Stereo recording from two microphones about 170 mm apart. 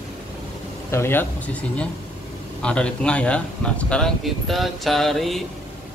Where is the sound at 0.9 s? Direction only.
15° left (ahead or behind).